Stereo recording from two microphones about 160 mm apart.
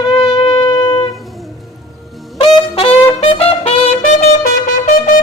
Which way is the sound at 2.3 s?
35° left (ahead or behind).